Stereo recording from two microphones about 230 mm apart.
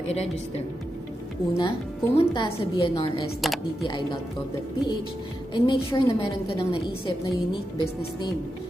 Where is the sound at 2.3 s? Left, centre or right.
Left.